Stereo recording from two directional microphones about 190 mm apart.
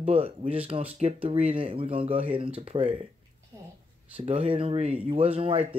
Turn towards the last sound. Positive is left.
turn(degrees=-30)  # may be behind; listen again after turning